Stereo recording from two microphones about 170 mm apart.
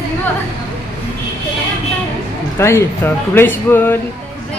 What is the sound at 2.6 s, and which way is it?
Music, 15° left (ahead or behind).